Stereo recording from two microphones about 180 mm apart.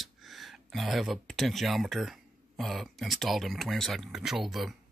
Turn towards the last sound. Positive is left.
turn(degrees=0)  # may be behind; listen again after turning